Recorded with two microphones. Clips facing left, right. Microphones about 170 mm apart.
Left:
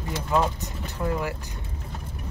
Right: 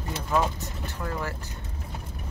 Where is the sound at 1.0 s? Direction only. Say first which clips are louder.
Left 5 dB; 15° left (ahead or behind).